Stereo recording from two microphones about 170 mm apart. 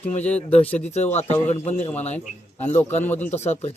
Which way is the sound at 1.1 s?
40° left (ahead or behind).